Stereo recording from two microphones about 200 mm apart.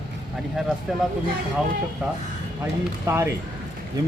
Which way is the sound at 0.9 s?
Centre (ahead or behind).